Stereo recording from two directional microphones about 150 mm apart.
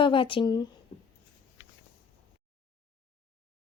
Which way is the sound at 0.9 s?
40° left (ahead or behind).